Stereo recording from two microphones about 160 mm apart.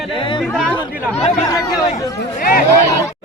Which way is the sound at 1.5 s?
20° left (ahead or behind).